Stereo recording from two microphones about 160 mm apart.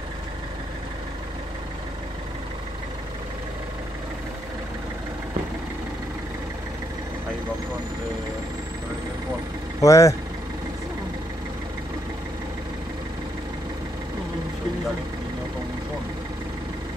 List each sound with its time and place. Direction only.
9.8 s speech: 20° left (ahead or behind)